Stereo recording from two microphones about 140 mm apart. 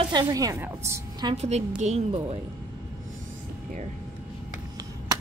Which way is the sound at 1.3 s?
50° right (ahead or behind).